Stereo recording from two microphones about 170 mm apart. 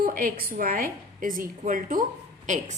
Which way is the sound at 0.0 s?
55° right (ahead or behind).